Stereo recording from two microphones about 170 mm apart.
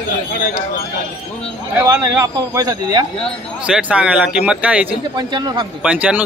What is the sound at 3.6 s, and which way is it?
Speech, 5° right (ahead or behind).